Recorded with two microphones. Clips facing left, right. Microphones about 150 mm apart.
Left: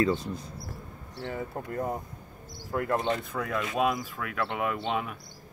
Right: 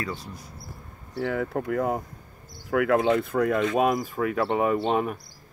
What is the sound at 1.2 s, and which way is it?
Speech, 70° right (ahead or behind).